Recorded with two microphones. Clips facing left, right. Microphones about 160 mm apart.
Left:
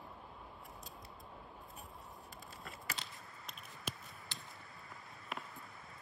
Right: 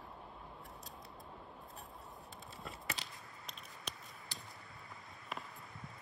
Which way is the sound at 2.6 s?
Centre (ahead or behind).